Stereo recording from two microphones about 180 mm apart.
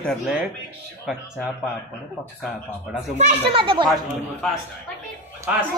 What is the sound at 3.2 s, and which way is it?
Speech, 35° right (ahead or behind).